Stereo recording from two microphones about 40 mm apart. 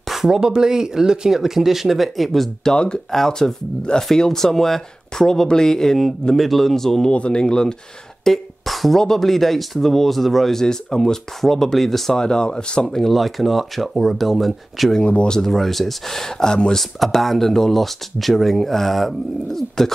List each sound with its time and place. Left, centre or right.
0.1 s speech: centre
2.7 s speech: left
7.1 s speech: left
8.2 s a sound: centre
9.0 s speech: centre
12.2 s speech: left
12.8 s speech: centre
15.0 s speech: left
15.4 s speech: centre